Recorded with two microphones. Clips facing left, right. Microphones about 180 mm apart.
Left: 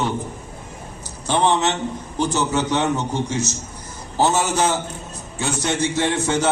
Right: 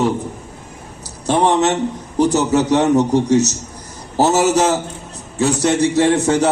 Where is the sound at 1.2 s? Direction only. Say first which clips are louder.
Right 4 dB; 35° right (ahead or behind).